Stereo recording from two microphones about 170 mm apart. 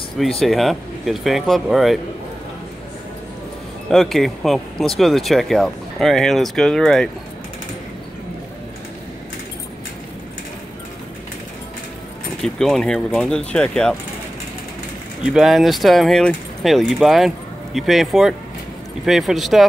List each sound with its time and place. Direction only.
0.2 s speech: centre (ahead or behind)
3.9 s speech: centre (ahead or behind)
12.4 s speech: centre (ahead or behind)
15.2 s speech: 5° right (ahead or behind)